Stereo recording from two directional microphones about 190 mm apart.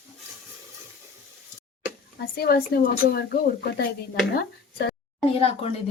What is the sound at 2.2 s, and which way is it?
Speech, 55° left (ahead or behind).